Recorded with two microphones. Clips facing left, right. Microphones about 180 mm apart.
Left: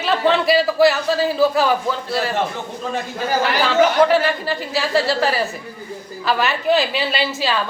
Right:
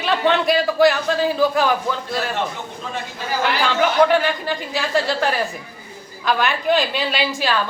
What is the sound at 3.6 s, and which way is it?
A man's voice, 5° left (ahead or behind).